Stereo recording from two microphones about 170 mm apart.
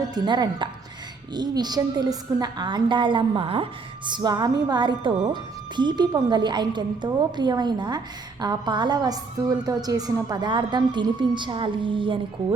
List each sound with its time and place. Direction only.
0.1 s a woman's voice: 25° right (ahead or behind)